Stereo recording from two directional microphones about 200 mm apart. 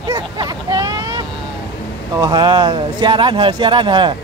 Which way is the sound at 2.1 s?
20° right (ahead or behind).